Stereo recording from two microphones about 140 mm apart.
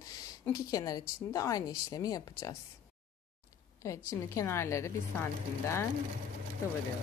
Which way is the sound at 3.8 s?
20° left (ahead or behind).